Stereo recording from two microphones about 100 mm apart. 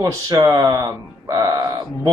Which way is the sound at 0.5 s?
40° right (ahead or behind).